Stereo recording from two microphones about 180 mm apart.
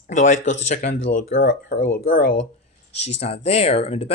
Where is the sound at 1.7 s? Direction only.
55° left (ahead or behind).